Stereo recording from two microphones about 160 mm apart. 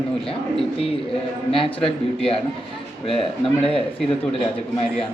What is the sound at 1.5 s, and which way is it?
Speech, 35° left (ahead or behind).